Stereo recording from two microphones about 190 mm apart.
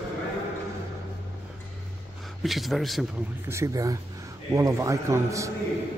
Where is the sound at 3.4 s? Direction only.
15° right (ahead or behind).